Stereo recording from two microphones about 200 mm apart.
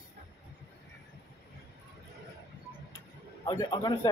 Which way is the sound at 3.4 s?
20° left (ahead or behind).